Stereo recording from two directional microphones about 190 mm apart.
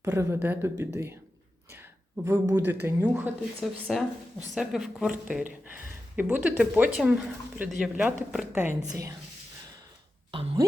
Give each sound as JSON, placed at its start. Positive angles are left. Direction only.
{"t": 0.0, "sound": "speech", "side_deg": -15}
{"t": 1.7, "sound": "a sound", "side_deg": -10}
{"t": 2.8, "sound": "speech", "side_deg": -10}
{"t": 10.3, "sound": "speech", "side_deg": -25}